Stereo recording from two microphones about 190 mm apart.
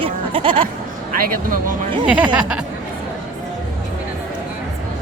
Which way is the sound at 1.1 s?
45° right (ahead or behind).